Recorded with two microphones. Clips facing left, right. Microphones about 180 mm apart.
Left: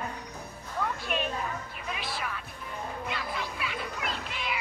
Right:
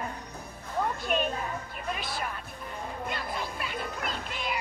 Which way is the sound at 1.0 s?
45° right (ahead or behind).